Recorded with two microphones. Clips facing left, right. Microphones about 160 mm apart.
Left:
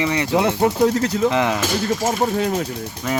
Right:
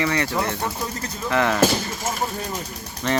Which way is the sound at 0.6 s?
80° left.